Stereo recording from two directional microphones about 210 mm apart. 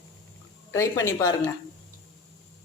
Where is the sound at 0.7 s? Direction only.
15° left (ahead or behind).